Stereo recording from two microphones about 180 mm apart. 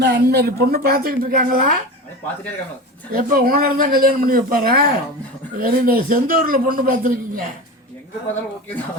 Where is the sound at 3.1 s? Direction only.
55° right (ahead or behind).